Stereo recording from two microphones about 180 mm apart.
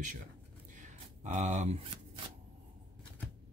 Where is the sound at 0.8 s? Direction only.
45° right (ahead or behind).